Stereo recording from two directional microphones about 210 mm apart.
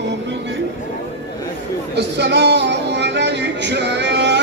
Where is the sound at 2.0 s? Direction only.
55° right (ahead or behind).